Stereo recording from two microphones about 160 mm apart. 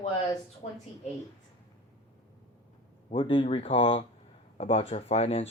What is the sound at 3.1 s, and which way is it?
Speech, 30° left (ahead or behind).